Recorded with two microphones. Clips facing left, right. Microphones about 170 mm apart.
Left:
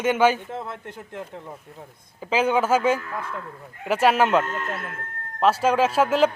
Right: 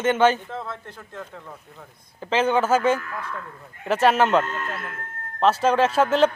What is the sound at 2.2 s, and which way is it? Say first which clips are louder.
Speech: even; 10° left (ahead or behind).